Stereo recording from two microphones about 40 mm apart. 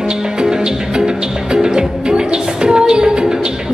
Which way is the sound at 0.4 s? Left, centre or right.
Centre.